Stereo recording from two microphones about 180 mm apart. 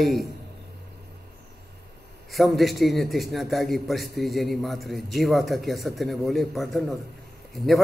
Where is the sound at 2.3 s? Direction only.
Centre (ahead or behind).